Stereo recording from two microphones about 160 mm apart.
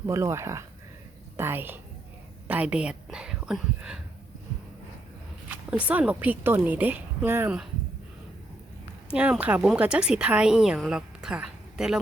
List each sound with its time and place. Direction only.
0.0 s a woman's voice: 15° right (ahead or behind)
5.5 s a woman's voice: 10° right (ahead or behind)
9.0 s a woman's voice: 5° right (ahead or behind)